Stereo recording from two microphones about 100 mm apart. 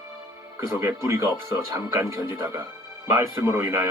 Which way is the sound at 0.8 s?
30° right (ahead or behind).